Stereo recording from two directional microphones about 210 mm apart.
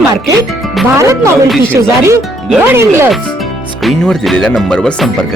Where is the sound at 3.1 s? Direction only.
Centre (ahead or behind).